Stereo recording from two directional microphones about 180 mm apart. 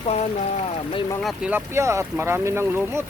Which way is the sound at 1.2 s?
Centre (ahead or behind).